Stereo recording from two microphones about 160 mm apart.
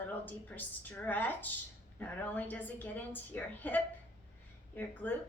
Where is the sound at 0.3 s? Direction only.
10° left (ahead or behind).